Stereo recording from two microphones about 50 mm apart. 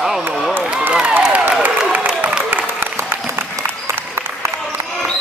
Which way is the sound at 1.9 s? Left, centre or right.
Right.